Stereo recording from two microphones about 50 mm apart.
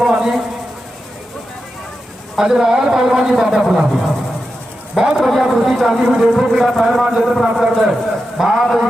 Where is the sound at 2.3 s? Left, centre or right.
Centre.